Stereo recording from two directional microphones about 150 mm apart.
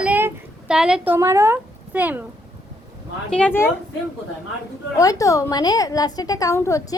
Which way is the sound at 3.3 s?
10° left (ahead or behind).